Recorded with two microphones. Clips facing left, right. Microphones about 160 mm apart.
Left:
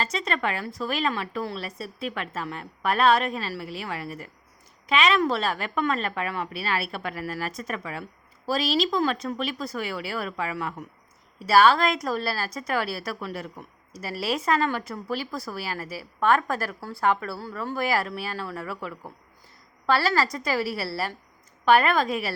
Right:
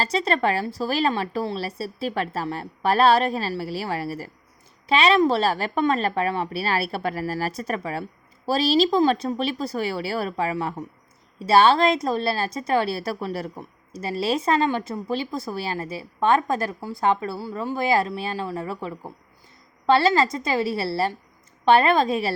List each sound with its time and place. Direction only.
0.0 s a woman's voice: 35° right (ahead or behind)